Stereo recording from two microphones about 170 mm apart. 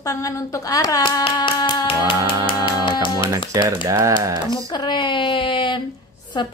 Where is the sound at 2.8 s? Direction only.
25° left (ahead or behind).